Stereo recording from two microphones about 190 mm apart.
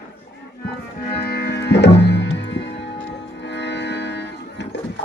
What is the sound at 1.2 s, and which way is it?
Music, 55° left (ahead or behind).